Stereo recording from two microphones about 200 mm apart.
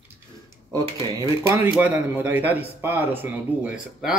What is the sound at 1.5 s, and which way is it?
Speech, 10° right (ahead or behind).